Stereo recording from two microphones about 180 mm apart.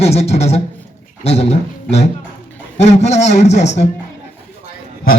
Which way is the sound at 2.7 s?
40° left (ahead or behind).